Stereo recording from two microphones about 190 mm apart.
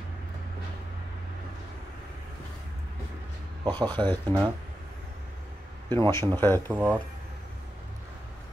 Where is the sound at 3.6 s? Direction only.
25° right (ahead or behind).